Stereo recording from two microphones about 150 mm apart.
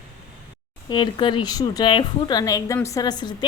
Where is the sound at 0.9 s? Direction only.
30° left (ahead or behind).